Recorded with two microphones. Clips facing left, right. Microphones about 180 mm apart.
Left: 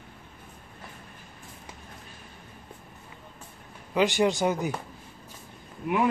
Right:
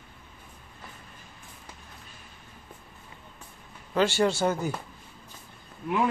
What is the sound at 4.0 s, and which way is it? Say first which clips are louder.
Speech: left 1 dB; 15° left (ahead or behind).